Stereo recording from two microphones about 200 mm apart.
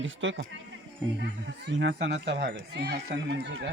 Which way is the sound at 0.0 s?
70° right (ahead or behind).